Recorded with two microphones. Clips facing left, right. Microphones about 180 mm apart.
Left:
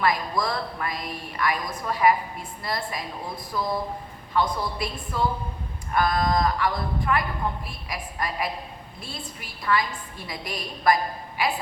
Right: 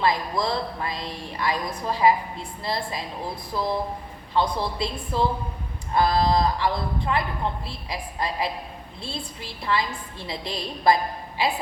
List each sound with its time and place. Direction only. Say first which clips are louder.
0.0 s a woman's voice: right 1 dB; 25° right (ahead or behind)